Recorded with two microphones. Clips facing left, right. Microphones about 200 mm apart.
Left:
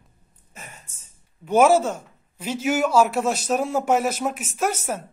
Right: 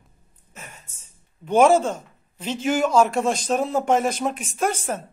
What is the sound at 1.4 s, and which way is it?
A man's voice, 10° left (ahead or behind).